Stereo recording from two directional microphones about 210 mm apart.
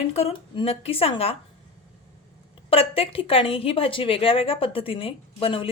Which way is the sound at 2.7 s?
25° left (ahead or behind).